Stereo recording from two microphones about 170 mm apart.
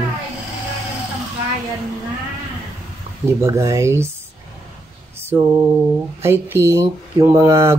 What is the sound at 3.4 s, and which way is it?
Speech, 15° right (ahead or behind).